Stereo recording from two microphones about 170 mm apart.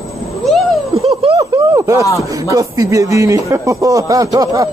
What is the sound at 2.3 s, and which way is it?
Speech, 20° right (ahead or behind).